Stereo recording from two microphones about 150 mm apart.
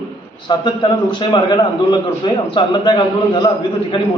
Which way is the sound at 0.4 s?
30° left (ahead or behind).